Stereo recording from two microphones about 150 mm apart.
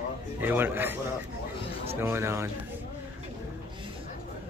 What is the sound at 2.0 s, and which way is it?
Speech, 15° right (ahead or behind).